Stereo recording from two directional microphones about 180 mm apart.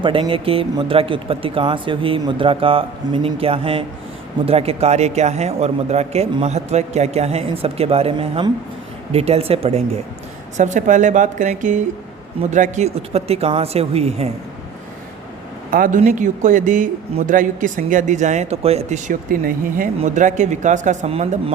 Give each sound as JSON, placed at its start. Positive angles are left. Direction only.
{"t": 0.0, "sound": "speech", "side_deg": -30}
{"t": 15.7, "sound": "speech", "side_deg": -50}